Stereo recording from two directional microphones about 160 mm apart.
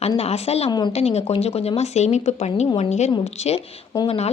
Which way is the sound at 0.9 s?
40° left (ahead or behind).